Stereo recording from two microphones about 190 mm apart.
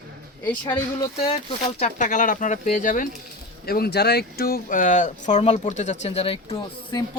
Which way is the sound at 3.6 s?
55° left (ahead or behind).